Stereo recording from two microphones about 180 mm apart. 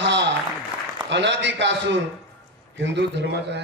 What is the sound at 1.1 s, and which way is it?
A man's voice, 80° right.